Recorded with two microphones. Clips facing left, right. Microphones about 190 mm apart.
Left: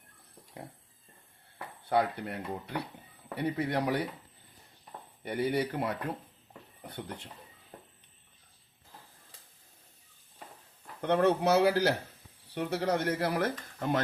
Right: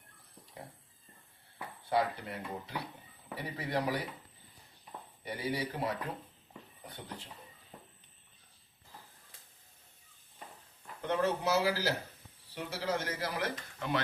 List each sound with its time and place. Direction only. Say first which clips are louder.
1.9 s speech: left 3 dB; 60° left (ahead or behind)
5.2 s speech: left 6 dB; 55° left (ahead or behind)
11.0 s speech: left 6 dB; 65° left (ahead or behind); by 14.0 s 45° left (ahead or behind)